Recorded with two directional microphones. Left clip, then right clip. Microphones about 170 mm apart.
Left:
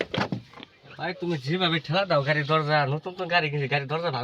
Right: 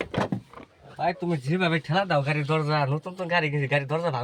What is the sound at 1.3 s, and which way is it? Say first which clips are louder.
Speech: even; 5° left (ahead or behind).